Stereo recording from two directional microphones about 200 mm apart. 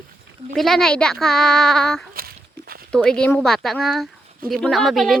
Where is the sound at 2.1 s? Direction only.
50° right (ahead or behind).